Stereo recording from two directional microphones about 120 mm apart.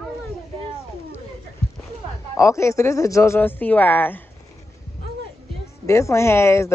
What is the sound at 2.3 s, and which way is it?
Speech, 25° left (ahead or behind).